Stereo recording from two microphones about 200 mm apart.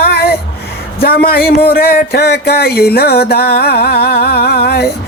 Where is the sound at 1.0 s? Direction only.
50° left (ahead or behind).